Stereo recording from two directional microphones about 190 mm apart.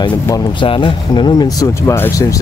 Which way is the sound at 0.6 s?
25° left (ahead or behind).